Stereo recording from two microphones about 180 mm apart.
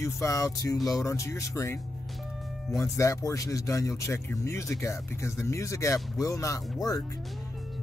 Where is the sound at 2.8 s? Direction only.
15° left (ahead or behind).